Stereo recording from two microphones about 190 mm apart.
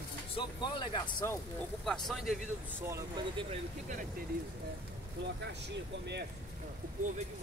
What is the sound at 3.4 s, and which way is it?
Speech, 35° right (ahead or behind).